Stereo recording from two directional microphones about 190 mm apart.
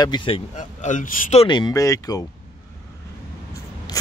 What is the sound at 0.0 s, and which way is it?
Speech, 25° left (ahead or behind).